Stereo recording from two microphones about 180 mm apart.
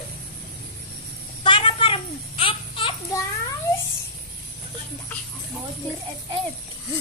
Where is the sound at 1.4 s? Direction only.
30° left (ahead or behind).